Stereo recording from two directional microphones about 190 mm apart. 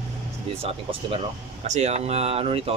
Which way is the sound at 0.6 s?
30° right (ahead or behind).